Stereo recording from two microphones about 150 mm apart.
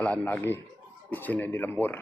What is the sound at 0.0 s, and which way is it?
Speech, 10° left (ahead or behind).